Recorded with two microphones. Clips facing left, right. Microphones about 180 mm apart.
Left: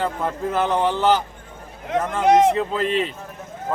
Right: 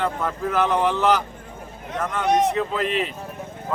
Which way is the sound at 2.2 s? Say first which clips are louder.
Left 5 dB; 90° left.